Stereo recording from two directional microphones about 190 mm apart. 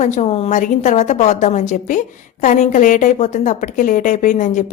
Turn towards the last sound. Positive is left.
turn(degrees=40)  # may be behind; listen again after turning